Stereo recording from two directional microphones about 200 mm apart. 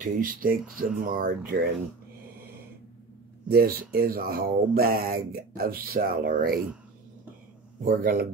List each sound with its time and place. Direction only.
0.0 s speech: 45° right (ahead or behind)
3.4 s speech: 50° right (ahead or behind)
7.8 s speech: 45° right (ahead or behind)